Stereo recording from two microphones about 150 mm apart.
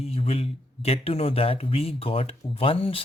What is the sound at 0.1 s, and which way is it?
Speech, 40° left (ahead or behind).